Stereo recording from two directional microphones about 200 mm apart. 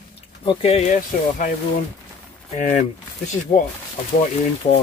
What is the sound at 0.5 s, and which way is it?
Speech, 30° left (ahead or behind).